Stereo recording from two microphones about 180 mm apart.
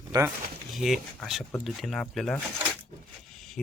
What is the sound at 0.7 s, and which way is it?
Speech, centre (ahead or behind).